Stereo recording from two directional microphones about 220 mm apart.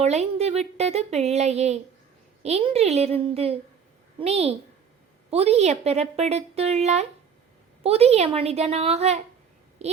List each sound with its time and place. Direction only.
0.0 s a woman's voice: 30° right (ahead or behind)